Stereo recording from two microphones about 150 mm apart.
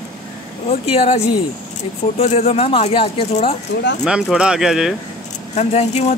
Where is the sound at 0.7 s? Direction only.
40° left (ahead or behind).